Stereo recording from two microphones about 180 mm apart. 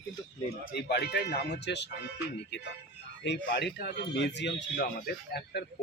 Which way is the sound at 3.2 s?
70° left (ahead or behind).